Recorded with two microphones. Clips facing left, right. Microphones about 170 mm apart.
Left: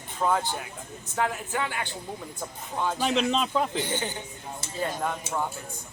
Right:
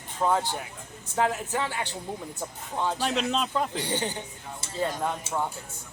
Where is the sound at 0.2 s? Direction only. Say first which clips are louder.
Right 1 dB; 20° right (ahead or behind).